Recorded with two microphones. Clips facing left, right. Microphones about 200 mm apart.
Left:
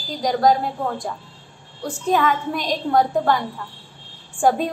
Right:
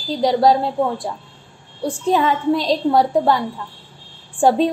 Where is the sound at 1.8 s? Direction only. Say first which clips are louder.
Right 2 dB; 25° right (ahead or behind).